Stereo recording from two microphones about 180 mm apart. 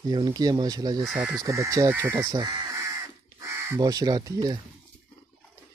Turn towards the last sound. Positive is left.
turn(degrees=-20)  # may be behind; listen again after turning